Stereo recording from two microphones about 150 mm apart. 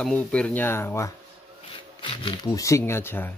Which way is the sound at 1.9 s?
35° left (ahead or behind).